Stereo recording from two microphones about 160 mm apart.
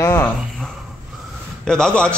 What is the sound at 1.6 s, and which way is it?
Speech, 5° left (ahead or behind).